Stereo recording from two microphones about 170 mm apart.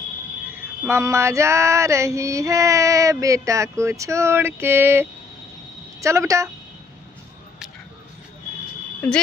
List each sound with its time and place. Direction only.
0.8 s female singing: 15° right (ahead or behind)
5.9 s a woman's voice: 20° right (ahead or behind)